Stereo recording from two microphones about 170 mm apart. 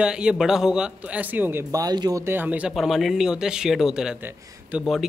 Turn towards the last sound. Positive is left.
turn(degrees=-5)  # may be behind; listen again after turning